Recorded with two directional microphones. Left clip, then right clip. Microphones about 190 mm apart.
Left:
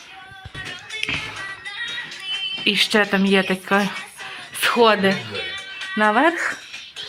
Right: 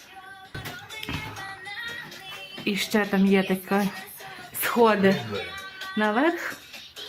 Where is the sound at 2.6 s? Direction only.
Centre (ahead or behind).